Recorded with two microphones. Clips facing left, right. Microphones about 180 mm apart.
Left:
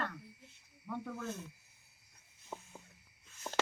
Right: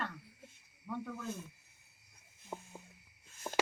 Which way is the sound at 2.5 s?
10° right (ahead or behind).